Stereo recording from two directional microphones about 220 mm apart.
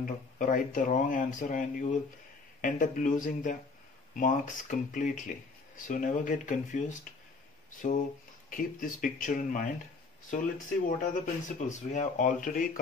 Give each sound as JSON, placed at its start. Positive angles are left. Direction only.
{"t": 0.0, "sound": "speech", "side_deg": 40}